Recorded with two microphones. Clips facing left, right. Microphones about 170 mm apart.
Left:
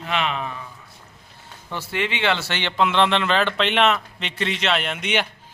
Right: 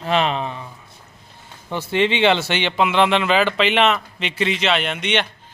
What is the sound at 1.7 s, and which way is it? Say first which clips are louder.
Speech: right 7 dB; 20° right (ahead or behind).